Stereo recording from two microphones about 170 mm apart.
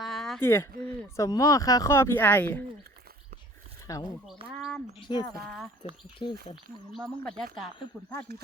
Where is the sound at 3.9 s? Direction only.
20° left (ahead or behind).